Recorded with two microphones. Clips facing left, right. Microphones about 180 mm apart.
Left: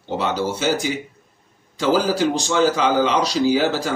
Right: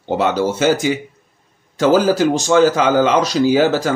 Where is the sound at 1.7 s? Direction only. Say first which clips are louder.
Right 5 dB; 50° right (ahead or behind).